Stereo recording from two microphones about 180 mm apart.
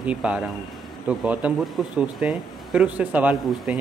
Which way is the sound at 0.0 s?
5° right (ahead or behind).